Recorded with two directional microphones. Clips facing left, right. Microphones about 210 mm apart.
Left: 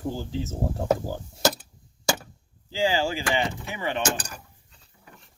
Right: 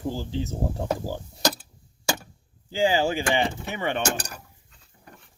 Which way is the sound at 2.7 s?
20° right (ahead or behind).